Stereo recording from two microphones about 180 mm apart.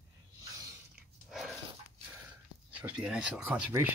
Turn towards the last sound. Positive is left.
turn(degrees=-5)  # may be behind; listen again after turning